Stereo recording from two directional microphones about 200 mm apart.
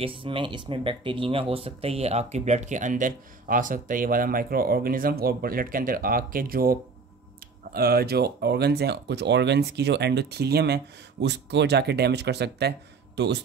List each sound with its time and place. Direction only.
0.0 s speech: 25° right (ahead or behind); by 13.4 s 60° right (ahead or behind)